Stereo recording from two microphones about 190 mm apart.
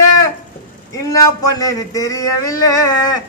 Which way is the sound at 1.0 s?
20° left (ahead or behind).